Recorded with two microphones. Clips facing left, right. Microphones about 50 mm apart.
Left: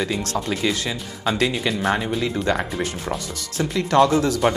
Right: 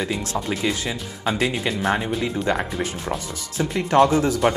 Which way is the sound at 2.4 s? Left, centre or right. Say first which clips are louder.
Left 1 dB; right.